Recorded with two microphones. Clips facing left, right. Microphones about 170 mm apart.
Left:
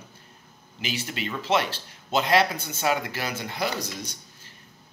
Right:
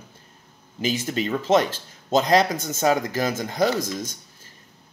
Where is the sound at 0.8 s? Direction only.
45° right (ahead or behind).